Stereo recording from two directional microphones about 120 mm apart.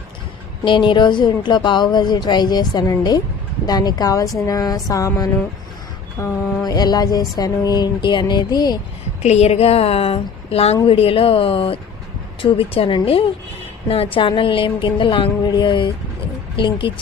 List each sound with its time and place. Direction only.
0.6 s speech: 40° left (ahead or behind)
4.4 s a sound: 30° left (ahead or behind)
6.7 s speech: 35° left (ahead or behind)
9.2 s a woman's voice: 60° left (ahead or behind); by 16.9 s 45° left (ahead or behind)